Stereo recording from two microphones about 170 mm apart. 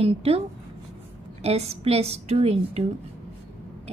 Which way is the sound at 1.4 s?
40° right (ahead or behind).